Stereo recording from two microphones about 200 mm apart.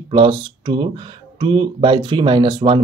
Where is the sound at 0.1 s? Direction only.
25° right (ahead or behind).